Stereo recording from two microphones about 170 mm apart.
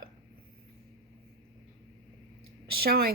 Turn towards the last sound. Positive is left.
turn(degrees=-65)  # may be behind; listen again after turning